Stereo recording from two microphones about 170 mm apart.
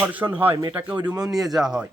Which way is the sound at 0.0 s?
10° right (ahead or behind).